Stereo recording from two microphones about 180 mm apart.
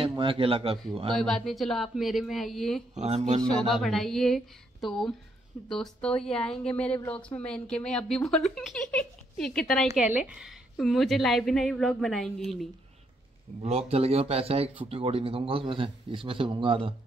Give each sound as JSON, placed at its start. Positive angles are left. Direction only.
{"t": 0.1, "sound": "a man's voice", "side_deg": -30}
{"t": 1.1, "sound": "a woman's voice", "side_deg": 0}
{"t": 2.9, "sound": "a man's voice", "side_deg": -40}
{"t": 3.6, "sound": "a woman's voice", "side_deg": 0}
{"t": 9.9, "sound": "a woman's voice", "side_deg": -10}
{"t": 13.6, "sound": "a man's voice", "side_deg": -35}